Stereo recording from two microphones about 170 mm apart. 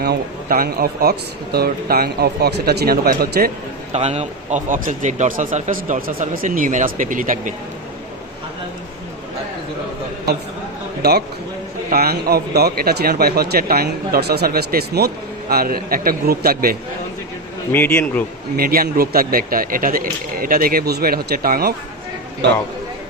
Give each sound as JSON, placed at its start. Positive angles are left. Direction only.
{"t": 0.0, "sound": "a man's voice", "side_deg": -60}
{"t": 3.9, "sound": "speech", "side_deg": -40}
{"t": 11.0, "sound": "a man's voice", "side_deg": -75}
{"t": 17.7, "sound": "speech", "side_deg": 10}
{"t": 18.5, "sound": "speech", "side_deg": -60}